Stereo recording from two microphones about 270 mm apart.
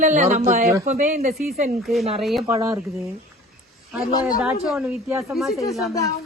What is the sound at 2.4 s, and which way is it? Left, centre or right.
Speech, centre.